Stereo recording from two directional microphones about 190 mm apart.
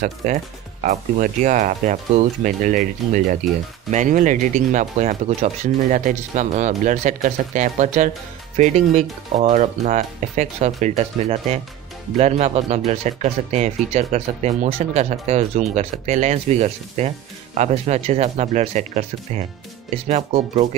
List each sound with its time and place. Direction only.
0.0 s speech: 45° right (ahead or behind)